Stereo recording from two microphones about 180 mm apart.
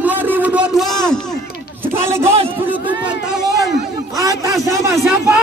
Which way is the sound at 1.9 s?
15° right (ahead or behind).